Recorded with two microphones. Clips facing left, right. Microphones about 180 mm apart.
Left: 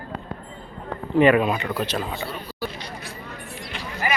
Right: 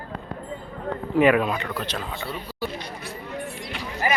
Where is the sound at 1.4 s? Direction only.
5° left (ahead or behind).